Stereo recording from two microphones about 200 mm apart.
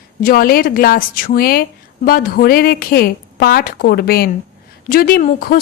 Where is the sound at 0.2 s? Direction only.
45° left (ahead or behind).